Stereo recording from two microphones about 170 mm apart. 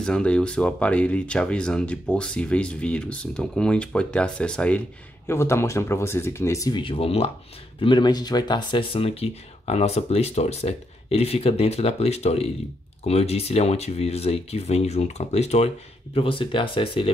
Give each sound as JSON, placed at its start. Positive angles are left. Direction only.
{"t": 0.0, "sound": "speech", "side_deg": 5}